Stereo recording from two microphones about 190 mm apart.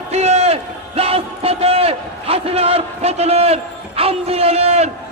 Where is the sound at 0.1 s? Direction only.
35° right (ahead or behind).